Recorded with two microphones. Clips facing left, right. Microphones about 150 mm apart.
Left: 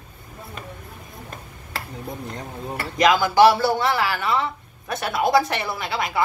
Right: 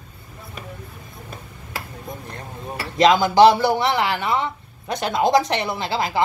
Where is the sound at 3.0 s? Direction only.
20° right (ahead or behind).